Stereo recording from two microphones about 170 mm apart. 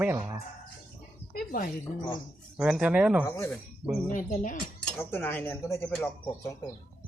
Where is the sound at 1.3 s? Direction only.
60° left (ahead or behind).